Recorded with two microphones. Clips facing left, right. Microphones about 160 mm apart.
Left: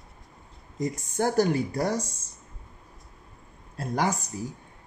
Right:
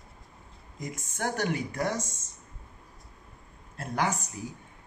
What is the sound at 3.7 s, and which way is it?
Speech, 35° left (ahead or behind).